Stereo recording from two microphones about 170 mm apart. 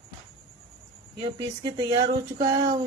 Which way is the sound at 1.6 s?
25° right (ahead or behind).